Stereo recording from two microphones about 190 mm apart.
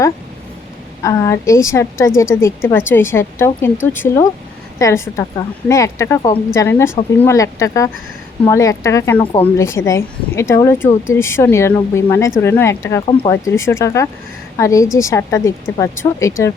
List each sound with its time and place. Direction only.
1.0 s a woman's voice: 15° left (ahead or behind)
9.2 s speech: 25° left (ahead or behind)
9.6 s a woman's voice: 15° left (ahead or behind)